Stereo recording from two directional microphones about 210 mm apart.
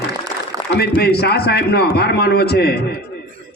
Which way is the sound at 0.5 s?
15° right (ahead or behind).